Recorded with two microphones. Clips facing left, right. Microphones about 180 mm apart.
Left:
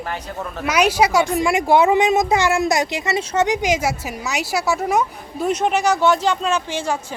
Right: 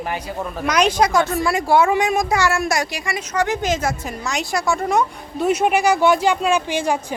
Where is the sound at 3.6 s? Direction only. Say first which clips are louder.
Left 1 dB; 10° left (ahead or behind).